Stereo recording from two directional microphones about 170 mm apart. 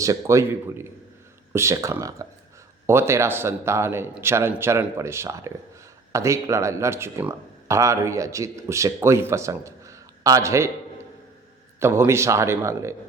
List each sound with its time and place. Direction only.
0.0 s speech: 20° right (ahead or behind)
11.8 s speech: 15° right (ahead or behind)